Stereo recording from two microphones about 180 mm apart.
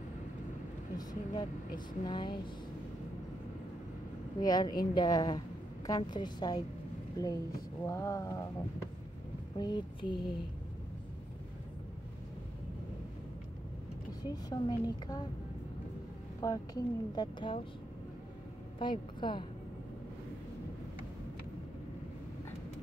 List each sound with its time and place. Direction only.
0.9 s speech: 20° left (ahead or behind)
4.4 s speech: 20° left (ahead or behind)
9.6 s speech: 25° left (ahead or behind)
14.2 s speech: 20° left (ahead or behind)
16.3 s speech: 20° left (ahead or behind)
18.8 s speech: 25° left (ahead or behind)